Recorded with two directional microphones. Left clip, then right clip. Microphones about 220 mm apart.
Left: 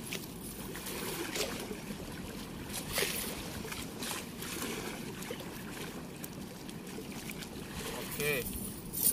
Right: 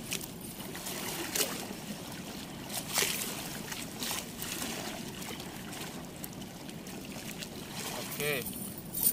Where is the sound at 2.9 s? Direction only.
45° right (ahead or behind).